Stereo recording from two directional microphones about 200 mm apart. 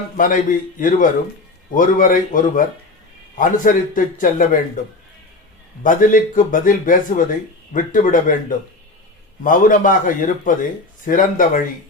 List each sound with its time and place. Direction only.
0.2 s speech: 40° left (ahead or behind)